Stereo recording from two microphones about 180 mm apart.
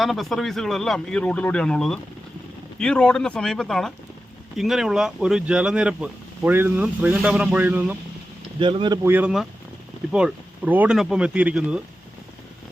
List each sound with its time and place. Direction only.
0.0 s speech: centre (ahead or behind)
8.5 s speech: 25° right (ahead or behind)
9.0 s speech: 10° right (ahead or behind)